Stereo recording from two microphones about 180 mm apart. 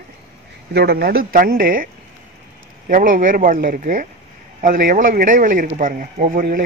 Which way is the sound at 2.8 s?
50° right (ahead or behind).